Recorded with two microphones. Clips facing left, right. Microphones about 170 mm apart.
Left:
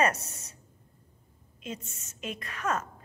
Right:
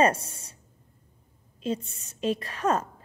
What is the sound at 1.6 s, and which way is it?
A woman's voice, 30° right (ahead or behind).